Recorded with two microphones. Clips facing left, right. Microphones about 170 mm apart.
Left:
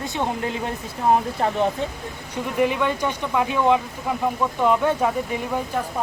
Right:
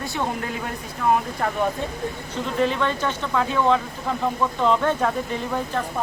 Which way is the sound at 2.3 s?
15° left (ahead or behind).